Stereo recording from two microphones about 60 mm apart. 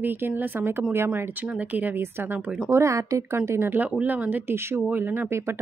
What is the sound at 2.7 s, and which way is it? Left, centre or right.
Speech, right.